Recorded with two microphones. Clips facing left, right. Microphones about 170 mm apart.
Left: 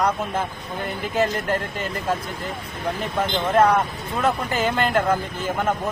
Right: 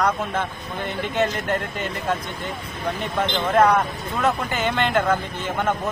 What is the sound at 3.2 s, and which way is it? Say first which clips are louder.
Speech: even; 5° left (ahead or behind).